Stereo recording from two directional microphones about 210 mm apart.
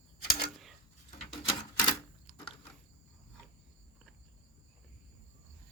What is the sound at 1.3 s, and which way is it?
Typewriter, 20° left (ahead or behind).